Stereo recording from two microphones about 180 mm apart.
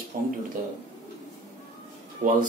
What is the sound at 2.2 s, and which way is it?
Speech, 50° right (ahead or behind).